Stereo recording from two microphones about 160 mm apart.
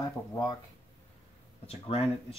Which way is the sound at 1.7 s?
35° left (ahead or behind).